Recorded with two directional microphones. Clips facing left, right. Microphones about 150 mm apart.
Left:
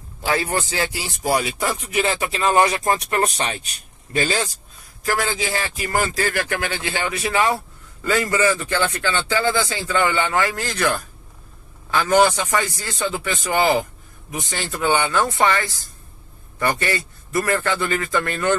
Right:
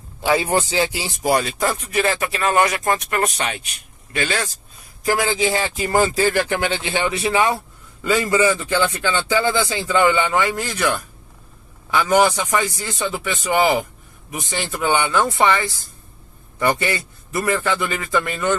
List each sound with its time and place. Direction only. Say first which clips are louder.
0.2 s speech: right 4 dB; 20° right (ahead or behind)
1.4 s speech: right 2 dB; 15° left (ahead or behind); by 4.5 s 35° left (ahead or behind)
5.0 s speech: right 4 dB; 20° right (ahead or behind)
11.9 s speech: even; 10° right (ahead or behind)